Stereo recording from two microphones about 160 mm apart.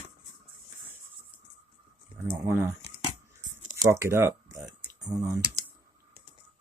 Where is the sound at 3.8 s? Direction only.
15° right (ahead or behind).